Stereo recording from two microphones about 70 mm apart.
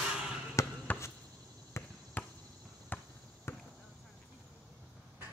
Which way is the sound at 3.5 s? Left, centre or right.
Left.